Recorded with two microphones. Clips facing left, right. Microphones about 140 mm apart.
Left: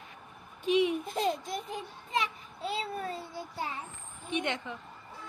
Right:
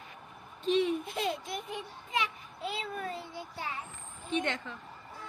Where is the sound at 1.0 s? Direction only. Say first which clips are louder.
Left 3 dB; 40° left (ahead or behind).